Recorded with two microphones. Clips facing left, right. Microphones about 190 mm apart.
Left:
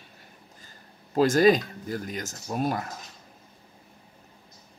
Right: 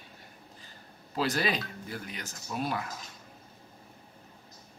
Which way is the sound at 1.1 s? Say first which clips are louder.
Left 11 dB; 45° left (ahead or behind).